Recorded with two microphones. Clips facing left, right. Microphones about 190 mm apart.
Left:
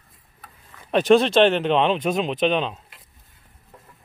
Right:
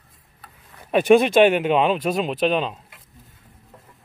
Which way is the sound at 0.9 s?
10° right (ahead or behind).